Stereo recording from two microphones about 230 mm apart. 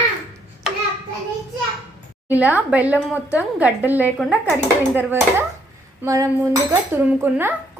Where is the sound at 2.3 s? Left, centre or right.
Centre.